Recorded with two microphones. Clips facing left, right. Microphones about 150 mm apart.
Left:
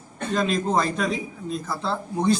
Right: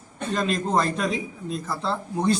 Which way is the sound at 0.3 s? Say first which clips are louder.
Left 1 dB; centre (ahead or behind).